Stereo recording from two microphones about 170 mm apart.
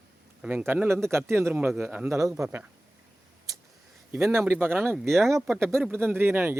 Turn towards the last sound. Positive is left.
turn(degrees=-15)  # may be behind; listen again after turning